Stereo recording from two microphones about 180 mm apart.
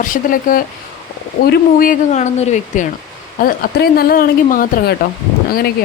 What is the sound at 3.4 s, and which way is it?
Speech, 55° left (ahead or behind).